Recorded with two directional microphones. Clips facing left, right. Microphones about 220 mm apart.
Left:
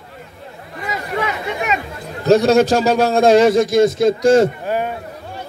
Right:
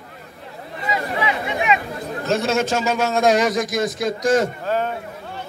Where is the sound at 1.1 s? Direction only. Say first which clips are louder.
Left 4 dB; 45° left (ahead or behind).